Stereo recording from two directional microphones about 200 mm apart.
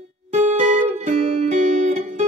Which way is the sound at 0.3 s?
35° right (ahead or behind).